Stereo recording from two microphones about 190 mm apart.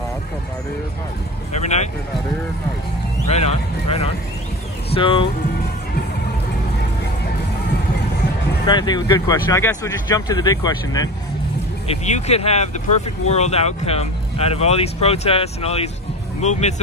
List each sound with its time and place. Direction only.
1.5 s speech: 35° left (ahead or behind)
3.3 s speech: 35° left (ahead or behind)
8.6 s speech: 25° left (ahead or behind)
11.9 s speech: 35° left (ahead or behind)